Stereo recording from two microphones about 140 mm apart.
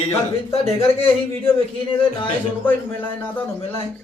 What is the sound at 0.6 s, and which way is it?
Speech, 45° left (ahead or behind).